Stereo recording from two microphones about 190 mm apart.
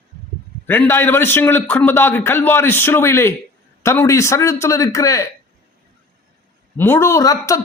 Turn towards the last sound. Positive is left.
turn(degrees=15)  # may be behind; listen again after turning